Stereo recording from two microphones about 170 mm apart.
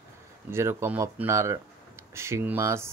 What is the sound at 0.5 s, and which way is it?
Speech, 15° right (ahead or behind).